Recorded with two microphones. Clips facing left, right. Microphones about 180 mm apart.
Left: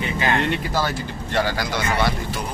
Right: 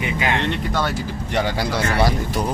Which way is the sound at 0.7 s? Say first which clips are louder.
Right 1 dB; 5° left (ahead or behind).